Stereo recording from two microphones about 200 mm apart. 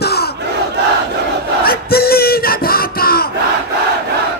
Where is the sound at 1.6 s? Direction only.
50° left (ahead or behind).